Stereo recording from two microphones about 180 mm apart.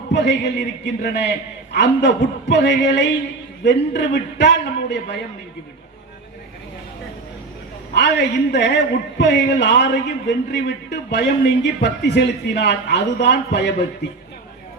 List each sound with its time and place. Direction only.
0.1 s a man's voice: 75° left (ahead or behind)
7.9 s a man's voice: 70° left (ahead or behind)